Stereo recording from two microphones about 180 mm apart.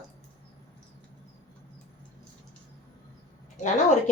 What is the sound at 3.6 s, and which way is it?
Speech, 40° left (ahead or behind).